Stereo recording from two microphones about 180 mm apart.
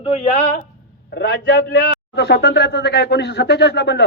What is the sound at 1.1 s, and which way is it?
A man's voice, 75° left (ahead or behind).